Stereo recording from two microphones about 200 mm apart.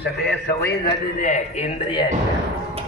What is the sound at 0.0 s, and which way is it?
Speech, 55° left (ahead or behind).